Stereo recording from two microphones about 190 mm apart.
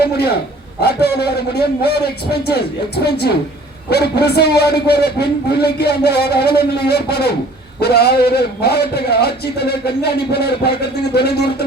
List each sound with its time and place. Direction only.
0.0 s a man's voice: 55° left (ahead or behind)